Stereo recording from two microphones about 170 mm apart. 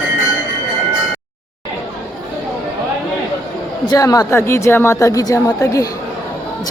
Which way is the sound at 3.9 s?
20° left (ahead or behind).